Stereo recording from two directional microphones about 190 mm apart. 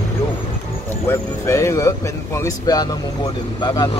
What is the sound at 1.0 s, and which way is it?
Speech, 15° left (ahead or behind).